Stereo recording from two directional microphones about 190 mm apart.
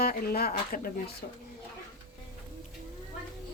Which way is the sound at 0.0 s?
50° left (ahead or behind).